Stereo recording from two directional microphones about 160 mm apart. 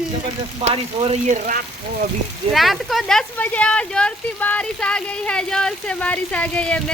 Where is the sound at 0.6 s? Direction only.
40° right (ahead or behind).